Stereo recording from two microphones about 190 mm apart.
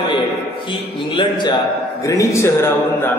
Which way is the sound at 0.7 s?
25° left (ahead or behind).